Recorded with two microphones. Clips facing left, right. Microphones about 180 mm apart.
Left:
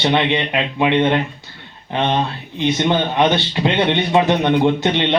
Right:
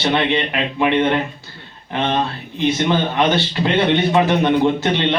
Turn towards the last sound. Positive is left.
turn(degrees=20)  # may be behind; listen again after turning